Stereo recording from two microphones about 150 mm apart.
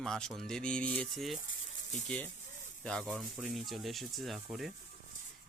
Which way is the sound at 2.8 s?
5° left (ahead or behind).